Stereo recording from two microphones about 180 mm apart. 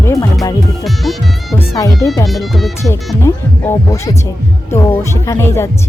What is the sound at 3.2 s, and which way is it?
Speech, 15° left (ahead or behind).